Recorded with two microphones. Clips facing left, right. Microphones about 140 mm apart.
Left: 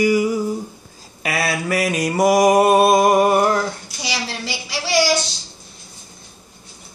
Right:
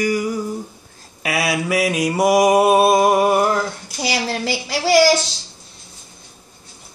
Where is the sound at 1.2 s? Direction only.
10° right (ahead or behind).